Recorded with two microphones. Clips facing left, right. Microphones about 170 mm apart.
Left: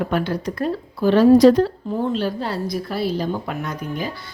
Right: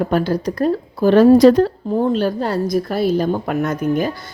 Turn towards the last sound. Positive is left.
turn(degrees=-45)  # may be behind; listen again after turning